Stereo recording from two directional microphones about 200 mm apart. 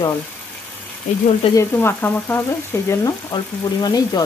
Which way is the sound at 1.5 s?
10° left (ahead or behind).